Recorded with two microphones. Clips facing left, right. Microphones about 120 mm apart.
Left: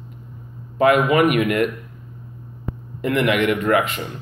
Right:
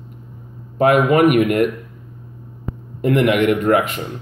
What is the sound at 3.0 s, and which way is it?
Speech, 50° right (ahead or behind).